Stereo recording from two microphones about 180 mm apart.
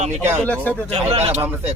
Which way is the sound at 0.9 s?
35° right (ahead or behind).